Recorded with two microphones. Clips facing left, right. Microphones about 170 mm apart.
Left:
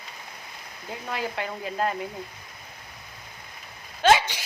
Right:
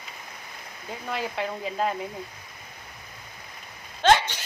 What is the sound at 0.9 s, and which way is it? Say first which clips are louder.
Speech: even; centre (ahead or behind).